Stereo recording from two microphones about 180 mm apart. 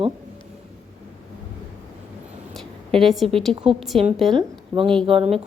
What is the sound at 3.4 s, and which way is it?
Speech, centre (ahead or behind).